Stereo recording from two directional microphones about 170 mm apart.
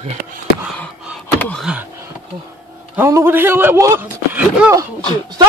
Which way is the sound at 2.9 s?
15° right (ahead or behind).